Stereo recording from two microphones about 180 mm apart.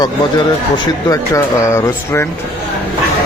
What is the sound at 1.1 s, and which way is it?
Speech, 15° left (ahead or behind).